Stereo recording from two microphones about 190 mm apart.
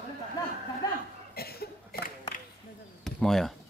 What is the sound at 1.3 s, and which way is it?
Cough, 55° left (ahead or behind).